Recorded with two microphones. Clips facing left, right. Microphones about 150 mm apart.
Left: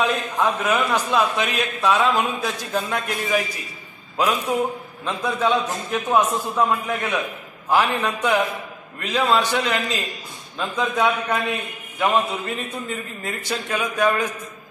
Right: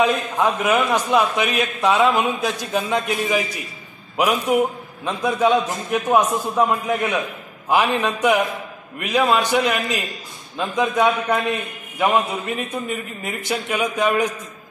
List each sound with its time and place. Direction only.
0.0 s a man's voice: 15° right (ahead or behind)